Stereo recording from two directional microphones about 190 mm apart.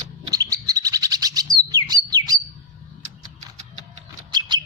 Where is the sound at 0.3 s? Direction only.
20° right (ahead or behind).